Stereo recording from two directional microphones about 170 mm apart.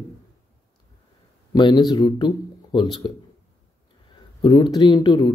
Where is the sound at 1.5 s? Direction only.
25° left (ahead or behind).